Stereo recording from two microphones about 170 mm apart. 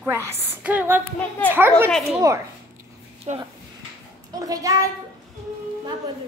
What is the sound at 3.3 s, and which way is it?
Speech, 40° right (ahead or behind).